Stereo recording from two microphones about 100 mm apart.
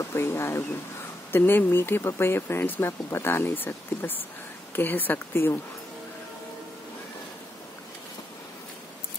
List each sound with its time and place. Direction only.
0.0 s speech: 25° left (ahead or behind)